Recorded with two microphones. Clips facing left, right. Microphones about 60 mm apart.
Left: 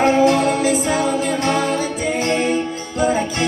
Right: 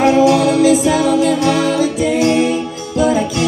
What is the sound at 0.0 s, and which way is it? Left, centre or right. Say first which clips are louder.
Music: right 3 dB; left.